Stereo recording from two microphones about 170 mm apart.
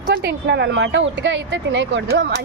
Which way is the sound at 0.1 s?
75° right (ahead or behind).